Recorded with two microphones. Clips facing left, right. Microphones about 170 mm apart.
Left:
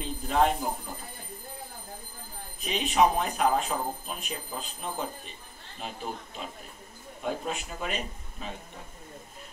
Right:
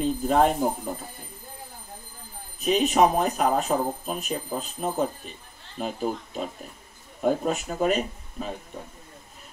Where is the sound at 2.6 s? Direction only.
45° right (ahead or behind).